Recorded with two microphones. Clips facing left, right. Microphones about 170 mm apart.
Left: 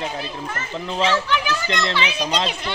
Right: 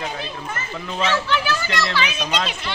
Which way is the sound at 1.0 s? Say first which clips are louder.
Left 1 dB; 15° left (ahead or behind).